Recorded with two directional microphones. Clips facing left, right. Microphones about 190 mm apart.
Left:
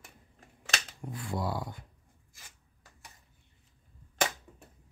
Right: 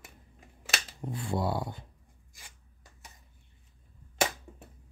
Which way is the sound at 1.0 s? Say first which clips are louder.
Right 4 dB; 25° right (ahead or behind).